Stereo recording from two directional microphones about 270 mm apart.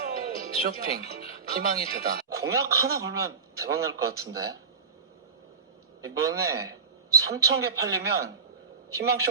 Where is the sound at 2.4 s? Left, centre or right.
Centre.